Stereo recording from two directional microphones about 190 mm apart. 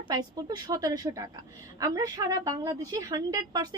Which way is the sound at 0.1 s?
20° right (ahead or behind).